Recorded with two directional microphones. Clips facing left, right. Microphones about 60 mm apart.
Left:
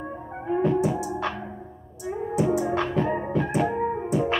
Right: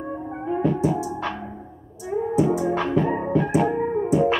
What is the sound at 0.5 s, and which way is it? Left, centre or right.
Music, centre.